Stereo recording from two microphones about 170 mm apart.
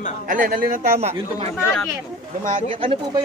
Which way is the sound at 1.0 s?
40° right (ahead or behind).